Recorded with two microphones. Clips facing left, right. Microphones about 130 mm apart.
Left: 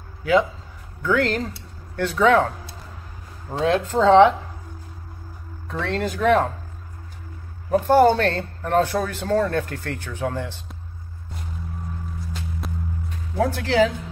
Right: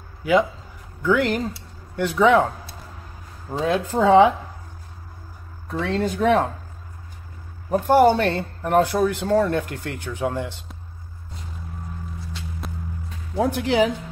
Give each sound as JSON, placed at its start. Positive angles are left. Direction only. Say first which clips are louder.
{"t": 0.2, "sound": "speech", "louder": "even", "side_deg": -15}
{"t": 3.5, "sound": "speech", "louder": "left 1 dB", "side_deg": -10}
{"t": 5.7, "sound": "speech", "louder": "right 2 dB", "side_deg": -10}
{"t": 7.8, "sound": "speech", "louder": "even", "side_deg": -15}
{"t": 13.4, "sound": "speech", "louder": "even", "side_deg": -15}